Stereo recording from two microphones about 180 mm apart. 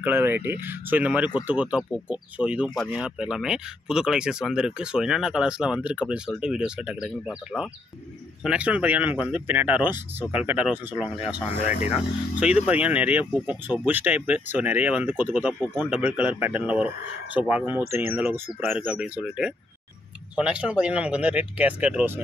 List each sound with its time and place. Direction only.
0.0 s speech: 10° right (ahead or behind)
11.6 s speech: 45° left (ahead or behind)
11.9 s speech: 5° right (ahead or behind)